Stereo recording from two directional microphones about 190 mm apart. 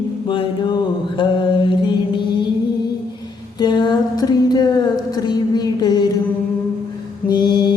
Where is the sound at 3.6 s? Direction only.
25° left (ahead or behind).